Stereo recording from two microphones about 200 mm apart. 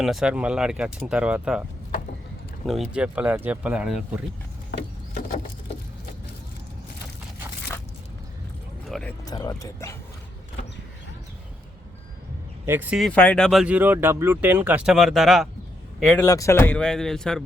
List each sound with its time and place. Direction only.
0.0 s speech: centre (ahead or behind)
2.6 s speech: centre (ahead or behind)
8.9 s music: 5° left (ahead or behind)
9.2 s speech: 20° left (ahead or behind)
12.6 s speech: 10° right (ahead or behind)
16.2 s speech: 15° left (ahead or behind)